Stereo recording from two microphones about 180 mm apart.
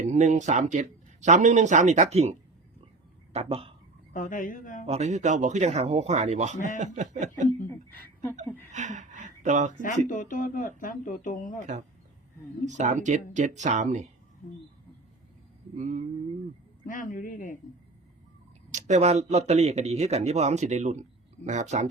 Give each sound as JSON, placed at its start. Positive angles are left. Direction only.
{"t": 0.0, "sound": "speech", "side_deg": -40}
{"t": 3.3, "sound": "speech", "side_deg": -30}
{"t": 4.1, "sound": "speech", "side_deg": 50}
{"t": 4.9, "sound": "speech", "side_deg": -40}
{"t": 7.7, "sound": "speech", "side_deg": 10}
{"t": 8.7, "sound": "speech", "side_deg": -40}
{"t": 9.7, "sound": "speech", "side_deg": 45}
{"t": 11.6, "sound": "speech", "side_deg": -40}
{"t": 15.7, "sound": "speech", "side_deg": -40}
{"t": 16.8, "sound": "speech", "side_deg": 45}
{"t": 18.7, "sound": "speech", "side_deg": -40}